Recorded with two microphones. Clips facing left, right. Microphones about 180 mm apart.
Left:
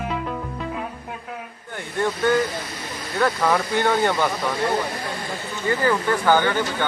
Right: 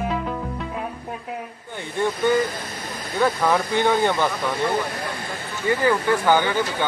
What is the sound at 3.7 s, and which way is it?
Speech, 15° right (ahead or behind).